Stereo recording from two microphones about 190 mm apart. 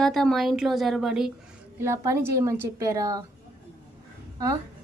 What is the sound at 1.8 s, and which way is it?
A woman's voice, 15° right (ahead or behind).